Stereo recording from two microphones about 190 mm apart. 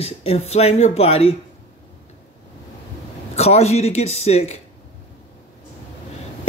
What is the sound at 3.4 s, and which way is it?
Speech, 35° left (ahead or behind).